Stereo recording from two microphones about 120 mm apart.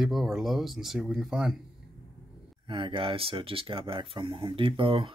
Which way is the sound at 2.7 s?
45° right (ahead or behind).